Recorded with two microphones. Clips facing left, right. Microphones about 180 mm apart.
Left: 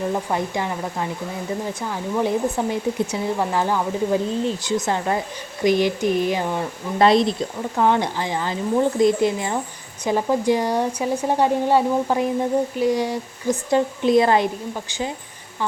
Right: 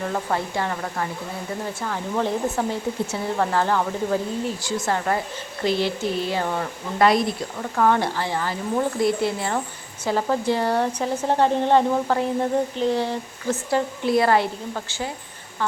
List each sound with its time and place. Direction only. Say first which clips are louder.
0.1 s speech: left 2 dB; 15° left (ahead or behind)